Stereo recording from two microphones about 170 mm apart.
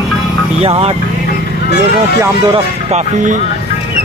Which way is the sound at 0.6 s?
35° right (ahead or behind).